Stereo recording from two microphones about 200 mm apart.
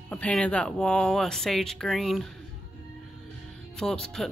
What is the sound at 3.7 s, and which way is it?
Speech, 5° left (ahead or behind).